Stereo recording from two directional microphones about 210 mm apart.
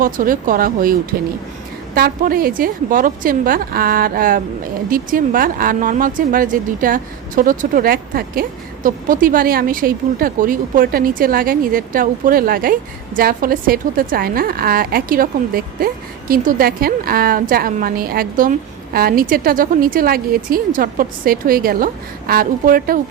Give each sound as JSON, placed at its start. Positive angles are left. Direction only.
{"t": 0.0, "sound": "a woman's voice", "side_deg": -40}
{"t": 2.0, "sound": "a woman's voice", "side_deg": -45}